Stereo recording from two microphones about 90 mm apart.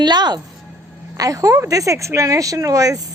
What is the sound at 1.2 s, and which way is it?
Speech, 40° right (ahead or behind).